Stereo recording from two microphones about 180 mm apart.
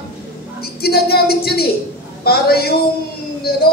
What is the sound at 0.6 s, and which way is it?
A man's voice, 60° left (ahead or behind).